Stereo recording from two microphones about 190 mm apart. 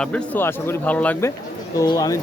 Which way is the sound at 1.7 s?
20° left (ahead or behind).